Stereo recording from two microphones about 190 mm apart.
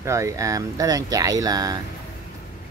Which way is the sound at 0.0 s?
15° right (ahead or behind).